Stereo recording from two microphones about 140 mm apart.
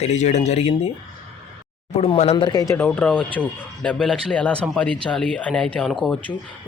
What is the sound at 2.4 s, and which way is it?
Speech, 25° left (ahead or behind).